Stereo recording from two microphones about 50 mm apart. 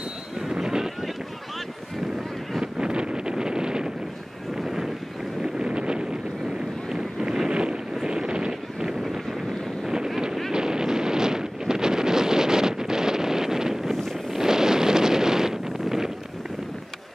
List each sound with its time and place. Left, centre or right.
0.5 s wind noise: centre
2.6 s wind noise: centre
5.4 s wind noise: centre